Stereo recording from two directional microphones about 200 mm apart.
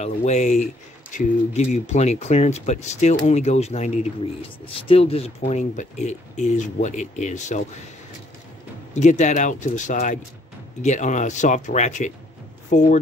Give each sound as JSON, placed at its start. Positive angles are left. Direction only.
{"t": 0.0, "sound": "speech", "side_deg": 35}
{"t": 8.9, "sound": "speech", "side_deg": 35}